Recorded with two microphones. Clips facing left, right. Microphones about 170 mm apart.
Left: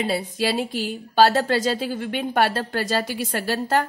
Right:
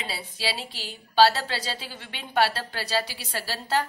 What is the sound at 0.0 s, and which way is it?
A woman's voice, 50° left (ahead or behind).